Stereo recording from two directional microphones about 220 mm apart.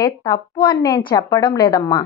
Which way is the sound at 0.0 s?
20° left (ahead or behind).